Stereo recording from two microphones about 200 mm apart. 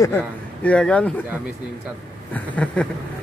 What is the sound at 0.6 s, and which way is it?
Speech, 5° left (ahead or behind).